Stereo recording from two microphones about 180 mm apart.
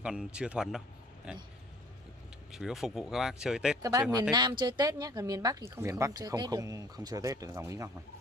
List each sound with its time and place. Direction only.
0.0 s speech: 5° right (ahead or behind)
2.5 s speech: centre (ahead or behind)
4.1 s speech: 20° right (ahead or behind)